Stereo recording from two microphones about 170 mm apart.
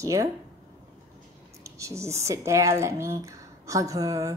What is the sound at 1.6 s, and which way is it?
A woman's voice, 20° right (ahead or behind).